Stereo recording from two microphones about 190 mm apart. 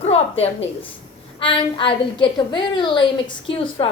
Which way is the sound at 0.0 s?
35° left (ahead or behind).